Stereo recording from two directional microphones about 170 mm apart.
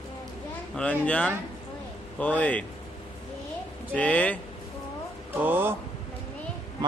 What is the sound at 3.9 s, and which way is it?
Speech, 10° left (ahead or behind).